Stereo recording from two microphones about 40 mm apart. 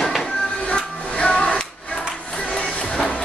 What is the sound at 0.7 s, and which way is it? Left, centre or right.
Music, left.